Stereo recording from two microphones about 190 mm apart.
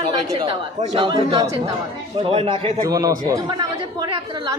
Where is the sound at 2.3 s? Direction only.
30° right (ahead or behind).